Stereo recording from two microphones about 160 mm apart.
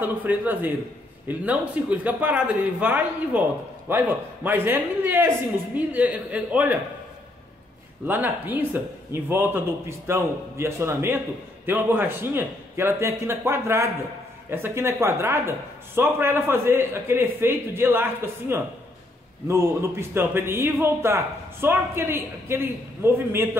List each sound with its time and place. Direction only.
0.0 s a man's voice: 10° right (ahead or behind)
8.1 s a man's voice: 10° right (ahead or behind)